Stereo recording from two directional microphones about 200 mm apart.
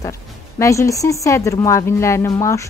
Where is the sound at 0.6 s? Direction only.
15° left (ahead or behind).